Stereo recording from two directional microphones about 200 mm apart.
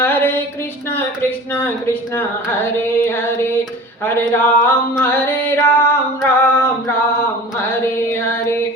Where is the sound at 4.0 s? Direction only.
10° left (ahead or behind).